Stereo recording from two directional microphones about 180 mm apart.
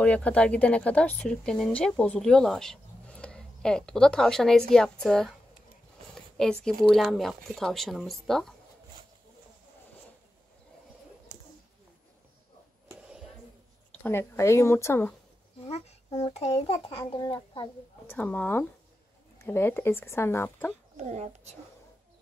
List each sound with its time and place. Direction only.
0.0 s speech: 5° left (ahead or behind)
6.3 s speech: 5° left (ahead or behind)
14.0 s speech: 15° left (ahead or behind)
15.6 s a child's voice: 35° left (ahead or behind)
18.0 s speech: 10° left (ahead or behind)
20.9 s speech: 40° right (ahead or behind)